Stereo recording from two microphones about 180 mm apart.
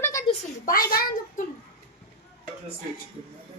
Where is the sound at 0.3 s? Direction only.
50° left (ahead or behind).